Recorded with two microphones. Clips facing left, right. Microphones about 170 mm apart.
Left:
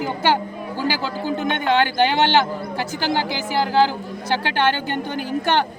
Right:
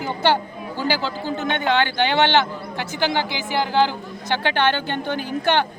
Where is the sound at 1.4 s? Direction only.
40° left (ahead or behind).